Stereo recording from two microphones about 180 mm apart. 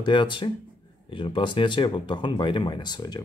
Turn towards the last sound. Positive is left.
turn(degrees=25)  # may be behind; listen again after turning